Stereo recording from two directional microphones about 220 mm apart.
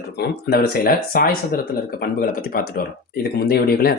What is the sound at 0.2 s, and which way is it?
Speech, 45° left (ahead or behind).